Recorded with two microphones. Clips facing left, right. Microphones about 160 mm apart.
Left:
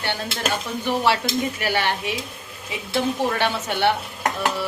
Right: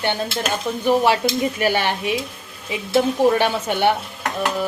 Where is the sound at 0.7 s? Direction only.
20° right (ahead or behind).